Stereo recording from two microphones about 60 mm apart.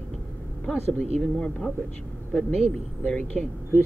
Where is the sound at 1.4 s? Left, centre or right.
Centre.